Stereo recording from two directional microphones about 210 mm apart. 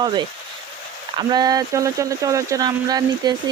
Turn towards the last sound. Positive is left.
turn(degrees=-20)  # may be behind; listen again after turning